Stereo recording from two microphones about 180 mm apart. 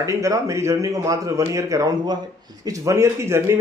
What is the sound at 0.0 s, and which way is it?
A man's voice, 15° right (ahead or behind).